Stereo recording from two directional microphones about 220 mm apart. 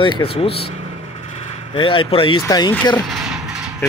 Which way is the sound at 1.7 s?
25° left (ahead or behind).